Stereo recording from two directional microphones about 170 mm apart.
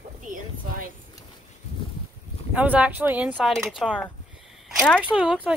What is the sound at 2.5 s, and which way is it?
Speech, 5° right (ahead or behind).